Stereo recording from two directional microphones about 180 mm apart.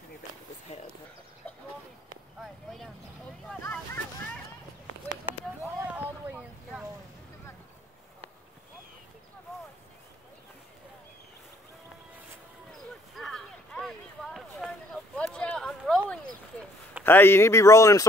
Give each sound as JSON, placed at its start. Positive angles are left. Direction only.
{"t": 0.7, "sound": "a sound", "side_deg": 35}
{"t": 2.4, "sound": "vehicle", "side_deg": 0}
{"t": 3.6, "sound": "boat", "side_deg": 10}
{"t": 5.6, "sound": "vehicle", "side_deg": -10}
{"t": 12.7, "sound": "a sound", "side_deg": 0}
{"t": 17.0, "sound": "speech", "side_deg": 10}